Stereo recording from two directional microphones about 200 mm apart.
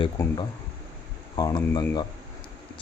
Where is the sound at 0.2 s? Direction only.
15° left (ahead or behind).